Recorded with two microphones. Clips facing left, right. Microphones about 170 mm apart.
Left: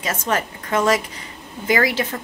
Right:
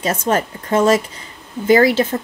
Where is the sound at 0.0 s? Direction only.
30° right (ahead or behind).